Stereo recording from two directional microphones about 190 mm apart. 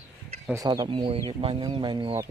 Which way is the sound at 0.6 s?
20° right (ahead or behind).